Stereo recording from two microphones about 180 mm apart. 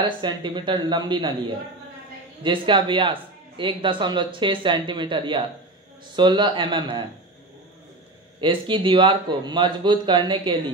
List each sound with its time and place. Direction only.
0.0 s speech: 25° right (ahead or behind)
2.4 s speech: 30° right (ahead or behind)
8.4 s speech: 25° right (ahead or behind)